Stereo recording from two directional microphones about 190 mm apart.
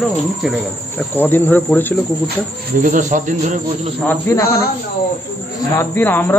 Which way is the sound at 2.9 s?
40° right (ahead or behind).